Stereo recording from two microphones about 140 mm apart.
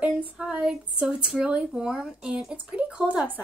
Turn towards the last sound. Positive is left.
turn(degrees=-10)  # may be behind; listen again after turning